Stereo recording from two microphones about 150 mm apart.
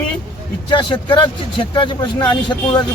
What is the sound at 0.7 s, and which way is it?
Speech, 30° left (ahead or behind).